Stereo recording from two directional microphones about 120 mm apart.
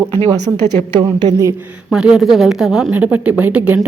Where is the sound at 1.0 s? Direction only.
35° right (ahead or behind).